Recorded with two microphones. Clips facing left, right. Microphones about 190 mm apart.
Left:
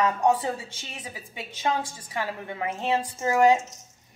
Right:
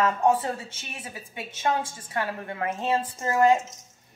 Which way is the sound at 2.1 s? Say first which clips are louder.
Right 1 dB; 15° left (ahead or behind).